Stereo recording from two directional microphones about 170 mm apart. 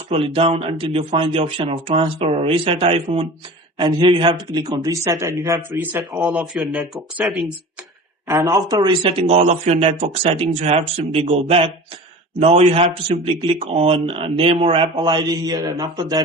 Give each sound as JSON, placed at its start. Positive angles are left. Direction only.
{"t": 0.1, "sound": "a man's voice", "side_deg": -35}
{"t": 8.3, "sound": "a man's voice", "side_deg": -20}